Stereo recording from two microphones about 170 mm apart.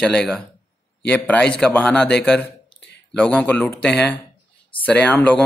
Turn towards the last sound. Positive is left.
turn(degrees=10)  # may be behind; listen again after turning